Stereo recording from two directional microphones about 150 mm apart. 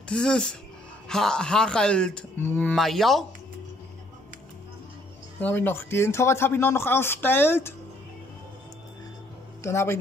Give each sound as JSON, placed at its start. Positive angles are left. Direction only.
{"t": 0.1, "sound": "speech", "side_deg": 5}
{"t": 5.4, "sound": "speech", "side_deg": 15}
{"t": 9.6, "sound": "speech", "side_deg": 20}